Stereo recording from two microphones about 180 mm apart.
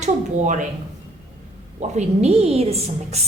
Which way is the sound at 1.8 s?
35° right (ahead or behind).